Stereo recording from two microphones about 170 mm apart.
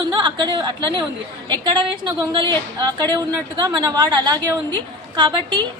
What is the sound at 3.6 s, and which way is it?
Speech, 25° right (ahead or behind).